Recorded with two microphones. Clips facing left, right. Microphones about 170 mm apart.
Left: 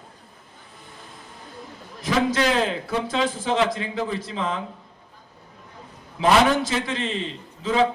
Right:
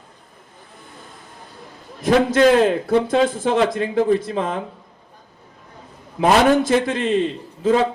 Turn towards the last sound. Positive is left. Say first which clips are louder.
# right 4 dB
turn(degrees=-50)  # may be behind; listen again after turning